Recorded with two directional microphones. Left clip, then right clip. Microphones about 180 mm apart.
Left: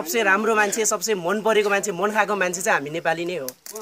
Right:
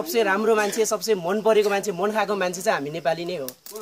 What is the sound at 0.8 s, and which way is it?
Speech, 5° right (ahead or behind).